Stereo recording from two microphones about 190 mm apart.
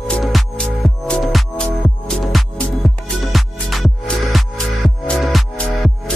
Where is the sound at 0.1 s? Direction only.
Centre (ahead or behind).